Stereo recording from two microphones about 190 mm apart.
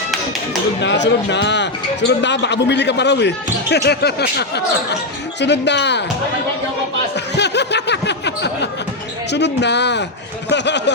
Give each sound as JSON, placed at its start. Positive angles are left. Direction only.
{"t": 0.8, "sound": "speech", "side_deg": 65}
{"t": 7.3, "sound": "a sound", "side_deg": 65}
{"t": 9.3, "sound": "speech", "side_deg": 65}